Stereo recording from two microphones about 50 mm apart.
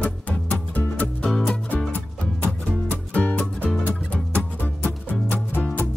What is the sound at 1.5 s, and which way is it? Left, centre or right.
Music, left.